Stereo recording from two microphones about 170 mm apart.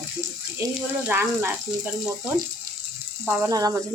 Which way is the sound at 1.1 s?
10° right (ahead or behind).